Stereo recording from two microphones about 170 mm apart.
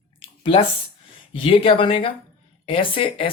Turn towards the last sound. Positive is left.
turn(degrees=30)  # may be behind; listen again after turning